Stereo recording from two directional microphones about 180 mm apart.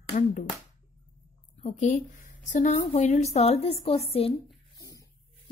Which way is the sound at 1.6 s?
45° left (ahead or behind).